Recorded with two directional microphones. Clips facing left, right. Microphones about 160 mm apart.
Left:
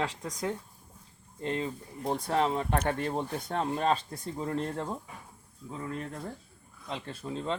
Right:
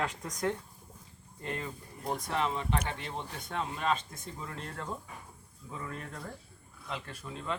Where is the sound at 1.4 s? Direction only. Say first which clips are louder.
Left 6 dB; 25° left (ahead or behind); by 4.9 s 40° left (ahead or behind).